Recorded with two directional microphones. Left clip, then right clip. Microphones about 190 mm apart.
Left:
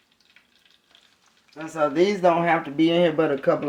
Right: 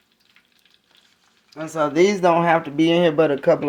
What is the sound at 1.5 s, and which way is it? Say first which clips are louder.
Speech: right 2 dB; 40° right (ahead or behind).